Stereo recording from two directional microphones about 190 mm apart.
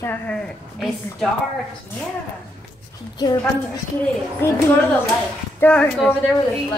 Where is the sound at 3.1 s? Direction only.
20° left (ahead or behind).